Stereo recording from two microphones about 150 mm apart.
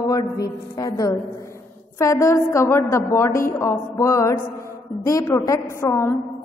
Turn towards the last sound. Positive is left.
turn(degrees=20)  # may be behind; listen again after turning